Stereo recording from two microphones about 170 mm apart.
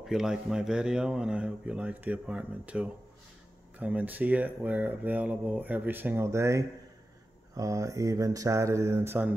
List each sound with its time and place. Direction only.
0.0 s speech: centre (ahead or behind)